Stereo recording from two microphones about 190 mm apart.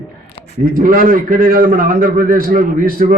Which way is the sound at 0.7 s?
50° right (ahead or behind).